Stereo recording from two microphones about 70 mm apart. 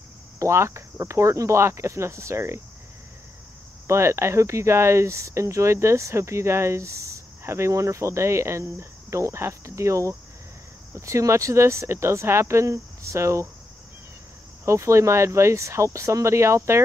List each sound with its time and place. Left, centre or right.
0.4 s speech: right
3.8 s speech: right
14.6 s speech: right